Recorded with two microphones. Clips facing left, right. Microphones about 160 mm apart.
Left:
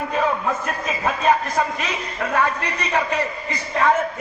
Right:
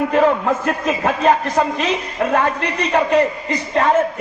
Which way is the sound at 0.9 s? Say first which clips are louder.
Right 5 dB; 80° right.